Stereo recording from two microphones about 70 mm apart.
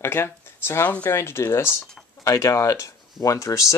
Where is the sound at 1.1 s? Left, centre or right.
Left.